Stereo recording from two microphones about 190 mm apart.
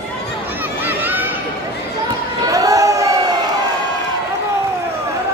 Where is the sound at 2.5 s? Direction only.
20° right (ahead or behind).